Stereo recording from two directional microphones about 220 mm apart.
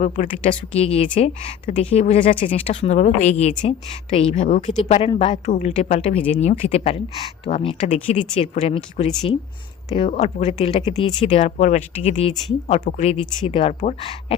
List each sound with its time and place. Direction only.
0.2 s a woman's voice: 30° left (ahead or behind)